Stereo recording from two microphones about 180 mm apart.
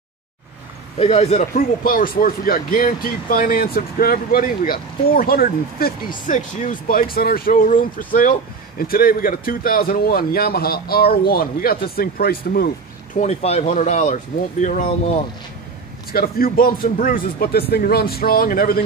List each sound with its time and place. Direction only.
0.9 s speech: 35° left (ahead or behind)
1.8 s speech: 50° left (ahead or behind)
13.2 s speech: 35° left (ahead or behind)
16.1 s a man's voice: 55° left (ahead or behind)